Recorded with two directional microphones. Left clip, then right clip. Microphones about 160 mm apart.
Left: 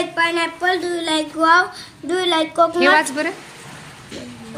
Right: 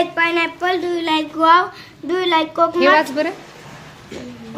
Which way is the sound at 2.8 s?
10° right (ahead or behind).